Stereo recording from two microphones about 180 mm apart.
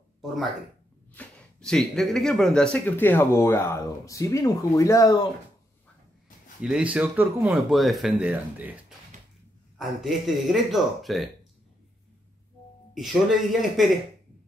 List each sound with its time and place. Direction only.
1.1 s speech: 5° left (ahead or behind)
6.6 s speech: 5° right (ahead or behind)
12.9 s speech: centre (ahead or behind)